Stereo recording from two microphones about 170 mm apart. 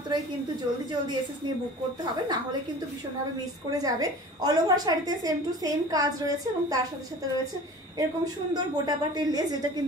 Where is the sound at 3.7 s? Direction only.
20° right (ahead or behind).